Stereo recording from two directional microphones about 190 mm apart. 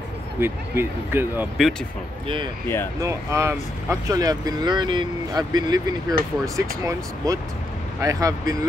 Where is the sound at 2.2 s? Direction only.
25° right (ahead or behind).